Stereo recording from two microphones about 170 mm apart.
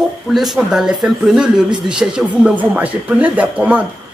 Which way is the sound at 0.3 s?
Centre (ahead or behind).